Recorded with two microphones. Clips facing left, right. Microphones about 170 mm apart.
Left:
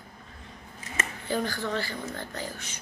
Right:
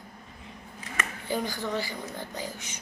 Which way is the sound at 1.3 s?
15° right (ahead or behind).